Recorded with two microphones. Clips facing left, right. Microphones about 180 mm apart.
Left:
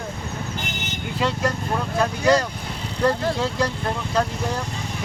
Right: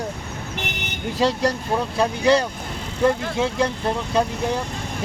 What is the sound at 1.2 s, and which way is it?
Speech, 35° right (ahead or behind).